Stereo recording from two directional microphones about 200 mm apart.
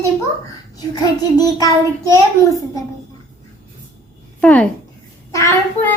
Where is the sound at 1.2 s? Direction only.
20° left (ahead or behind).